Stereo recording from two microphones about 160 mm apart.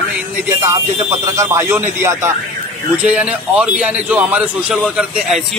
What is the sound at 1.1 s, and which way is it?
A man's voice, 20° right (ahead or behind).